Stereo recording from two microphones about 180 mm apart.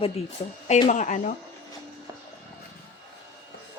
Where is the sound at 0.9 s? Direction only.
45° left (ahead or behind).